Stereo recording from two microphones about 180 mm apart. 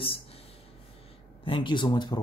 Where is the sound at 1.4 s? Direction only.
25° left (ahead or behind).